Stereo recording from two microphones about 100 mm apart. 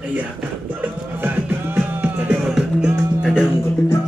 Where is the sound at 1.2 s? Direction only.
20° right (ahead or behind).